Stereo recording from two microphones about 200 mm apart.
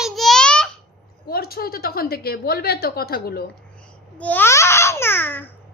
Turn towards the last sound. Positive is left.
turn(degrees=10)  # may be behind; listen again after turning